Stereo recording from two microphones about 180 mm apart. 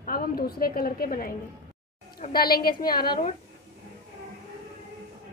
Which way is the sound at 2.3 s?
55° left (ahead or behind).